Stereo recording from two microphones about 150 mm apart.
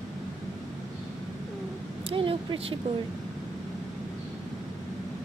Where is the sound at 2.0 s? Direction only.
35° right (ahead or behind).